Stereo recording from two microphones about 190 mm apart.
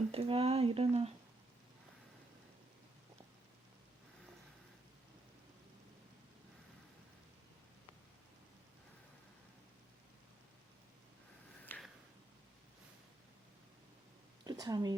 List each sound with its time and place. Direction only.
0.1 s speech: 30° right (ahead or behind)
11.6 s a sound: 10° left (ahead or behind)
14.4 s speech: 20° right (ahead or behind)